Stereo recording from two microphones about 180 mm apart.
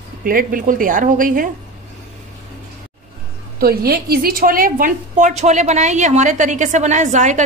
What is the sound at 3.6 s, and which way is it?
A woman's voice, 60° right (ahead or behind).